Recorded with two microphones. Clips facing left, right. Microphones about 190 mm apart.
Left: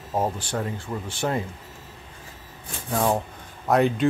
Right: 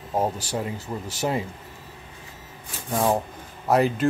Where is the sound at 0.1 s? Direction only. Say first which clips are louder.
Right 1 dB; 10° right (ahead or behind).